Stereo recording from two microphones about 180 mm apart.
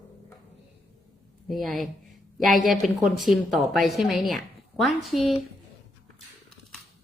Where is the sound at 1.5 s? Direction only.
Centre (ahead or behind).